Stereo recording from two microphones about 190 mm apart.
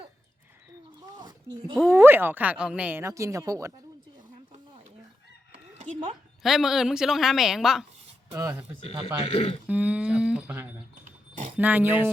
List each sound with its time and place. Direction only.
1.2 s a sound: 25° right (ahead or behind)
1.9 s a woman's voice: 10° right (ahead or behind)
5.5 s chicken: 30° right (ahead or behind)
6.4 s a woman's voice: centre (ahead or behind)
9.2 s speech: 30° left (ahead or behind)
9.6 s a woman's voice: 5° right (ahead or behind)